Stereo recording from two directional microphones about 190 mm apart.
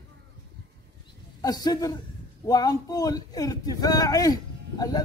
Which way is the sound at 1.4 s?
20° left (ahead or behind).